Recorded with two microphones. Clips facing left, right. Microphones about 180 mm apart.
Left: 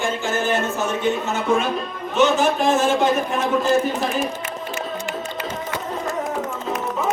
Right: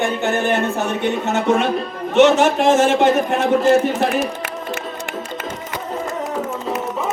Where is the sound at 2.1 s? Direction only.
90° right; by 4.3 s 70° right (ahead or behind).